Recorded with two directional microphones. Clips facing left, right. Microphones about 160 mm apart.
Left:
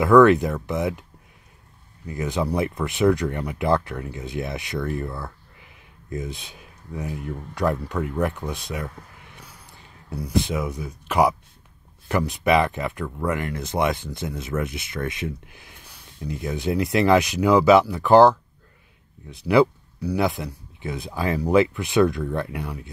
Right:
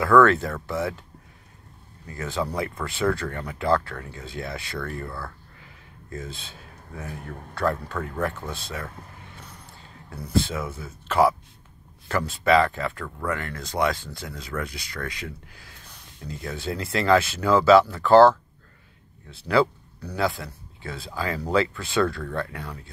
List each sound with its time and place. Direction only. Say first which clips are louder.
0.0 s speech: left 4 dB; 20° left (ahead or behind)
2.0 s speech: left 4 dB; 15° left (ahead or behind)
10.0 s speech: left 1 dB; 15° left (ahead or behind)